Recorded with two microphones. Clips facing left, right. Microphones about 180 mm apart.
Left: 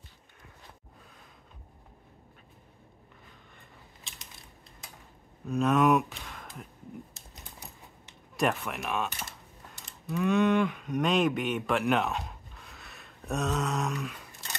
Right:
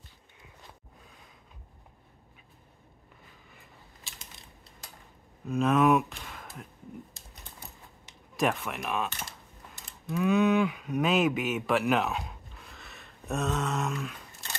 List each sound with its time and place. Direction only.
4.1 s mechanisms: centre (ahead or behind)
5.5 s speech: centre (ahead or behind)
8.4 s a sound: centre (ahead or behind)